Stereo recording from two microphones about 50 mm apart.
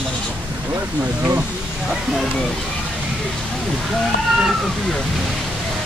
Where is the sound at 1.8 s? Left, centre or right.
Centre.